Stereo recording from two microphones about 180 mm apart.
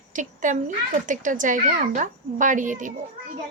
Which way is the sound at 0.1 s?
45° right (ahead or behind).